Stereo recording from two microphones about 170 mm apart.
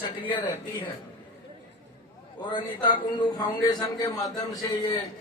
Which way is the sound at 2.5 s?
25° left (ahead or behind).